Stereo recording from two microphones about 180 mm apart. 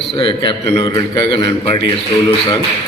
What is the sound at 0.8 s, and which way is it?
A man's voice, 20° left (ahead or behind).